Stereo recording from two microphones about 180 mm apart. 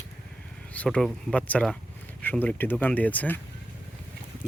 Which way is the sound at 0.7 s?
5° left (ahead or behind).